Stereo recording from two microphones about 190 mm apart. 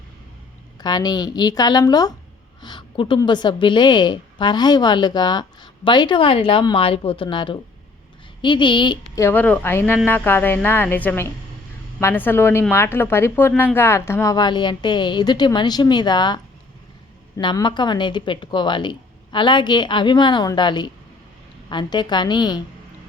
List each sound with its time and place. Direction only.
0.8 s a woman's voice: 20° left (ahead or behind)